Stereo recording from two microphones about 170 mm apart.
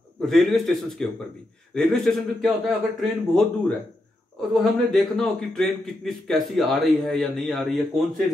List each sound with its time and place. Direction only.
0.2 s a man's voice: centre (ahead or behind)